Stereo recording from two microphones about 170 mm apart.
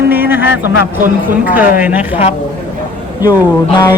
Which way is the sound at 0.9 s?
50° right (ahead or behind).